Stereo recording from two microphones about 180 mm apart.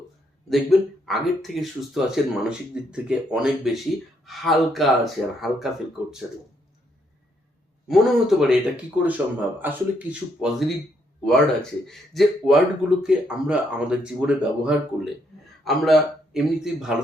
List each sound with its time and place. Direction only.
0.5 s speech: centre (ahead or behind)
7.9 s a man's voice: centre (ahead or behind)